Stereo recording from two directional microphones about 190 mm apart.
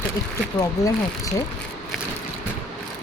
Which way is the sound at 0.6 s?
15° left (ahead or behind).